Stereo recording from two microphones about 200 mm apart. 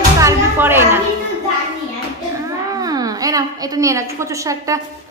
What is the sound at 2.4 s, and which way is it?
A woman's voice, 20° right (ahead or behind).